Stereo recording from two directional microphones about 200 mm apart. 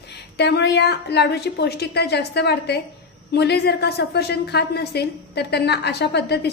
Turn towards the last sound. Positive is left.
turn(degrees=55)  # may be behind; listen again after turning